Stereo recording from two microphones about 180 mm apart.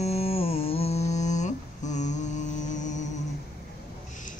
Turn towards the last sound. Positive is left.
turn(degrees=45)  # may be behind; listen again after turning